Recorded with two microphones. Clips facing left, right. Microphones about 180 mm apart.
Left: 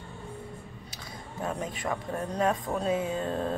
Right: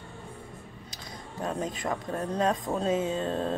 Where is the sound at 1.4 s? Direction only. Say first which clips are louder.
Right 1 dB; 20° right (ahead or behind).